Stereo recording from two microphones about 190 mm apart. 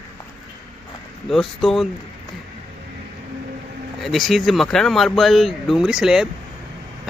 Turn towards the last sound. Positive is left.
turn(degrees=-5)  # may be behind; listen again after turning